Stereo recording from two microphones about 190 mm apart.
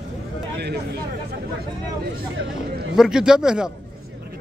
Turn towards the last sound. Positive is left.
turn(degrees=-5)  # may be behind; listen again after turning